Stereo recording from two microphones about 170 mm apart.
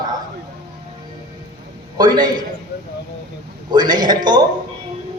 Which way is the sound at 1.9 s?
25° right (ahead or behind).